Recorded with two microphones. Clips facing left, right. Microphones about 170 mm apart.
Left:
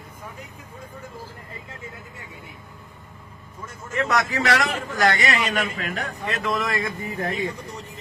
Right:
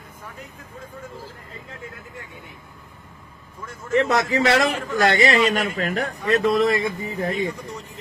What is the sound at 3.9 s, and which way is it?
A man's voice, 30° right (ahead or behind).